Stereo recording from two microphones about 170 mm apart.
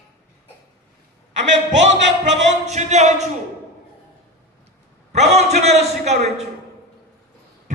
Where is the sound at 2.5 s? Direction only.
40° right (ahead or behind).